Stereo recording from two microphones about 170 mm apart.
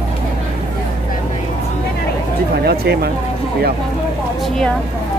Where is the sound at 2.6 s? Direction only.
70° right (ahead or behind).